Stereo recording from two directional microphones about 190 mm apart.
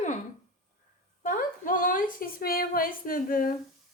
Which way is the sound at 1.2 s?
45° left (ahead or behind).